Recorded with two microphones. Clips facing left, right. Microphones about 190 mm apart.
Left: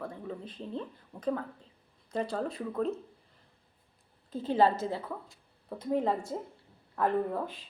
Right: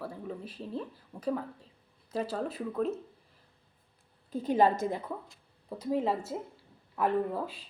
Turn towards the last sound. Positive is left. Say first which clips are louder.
# even
turn(degrees=-5)  # may be behind; listen again after turning